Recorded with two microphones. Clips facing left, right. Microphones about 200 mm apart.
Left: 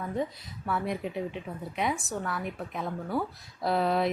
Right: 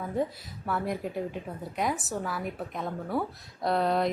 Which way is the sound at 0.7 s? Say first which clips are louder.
Even; centre (ahead or behind).